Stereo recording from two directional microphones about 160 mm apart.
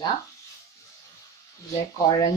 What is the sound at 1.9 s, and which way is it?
Speech, 20° left (ahead or behind).